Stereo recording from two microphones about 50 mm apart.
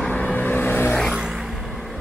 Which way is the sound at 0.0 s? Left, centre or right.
Left.